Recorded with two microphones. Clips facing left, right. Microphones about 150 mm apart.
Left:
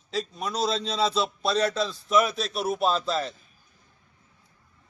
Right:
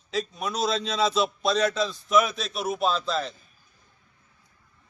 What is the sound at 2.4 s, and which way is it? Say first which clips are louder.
Speech: left 1 dB; 35° left (ahead or behind).